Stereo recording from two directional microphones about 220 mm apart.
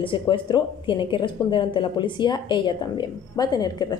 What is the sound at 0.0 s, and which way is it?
A woman's voice, 20° left (ahead or behind).